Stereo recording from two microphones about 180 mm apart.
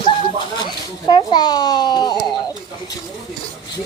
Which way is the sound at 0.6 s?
25° left (ahead or behind).